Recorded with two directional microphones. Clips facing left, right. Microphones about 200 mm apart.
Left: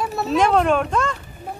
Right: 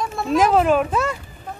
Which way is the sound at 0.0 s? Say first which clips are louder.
Right 1 dB; 5° left (ahead or behind).